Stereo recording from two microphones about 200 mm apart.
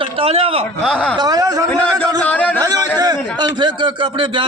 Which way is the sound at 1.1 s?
20° right (ahead or behind).